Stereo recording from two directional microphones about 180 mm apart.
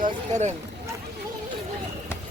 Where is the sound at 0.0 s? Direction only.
40° right (ahead or behind).